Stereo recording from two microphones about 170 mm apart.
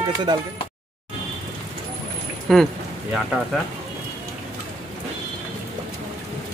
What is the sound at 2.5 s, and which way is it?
Speech, centre (ahead or behind).